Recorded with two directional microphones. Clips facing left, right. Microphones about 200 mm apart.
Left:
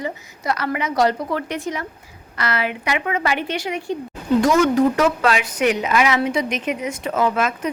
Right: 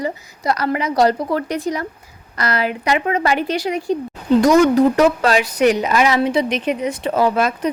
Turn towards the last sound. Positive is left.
turn(degrees=-35)  # may be behind; listen again after turning